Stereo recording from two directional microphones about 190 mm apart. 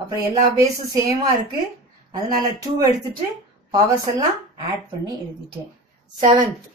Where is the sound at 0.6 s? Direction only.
15° right (ahead or behind).